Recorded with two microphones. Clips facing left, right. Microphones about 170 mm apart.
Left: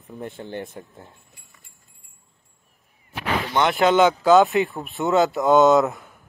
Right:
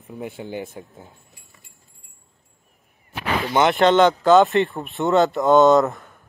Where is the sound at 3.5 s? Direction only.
Centre (ahead or behind).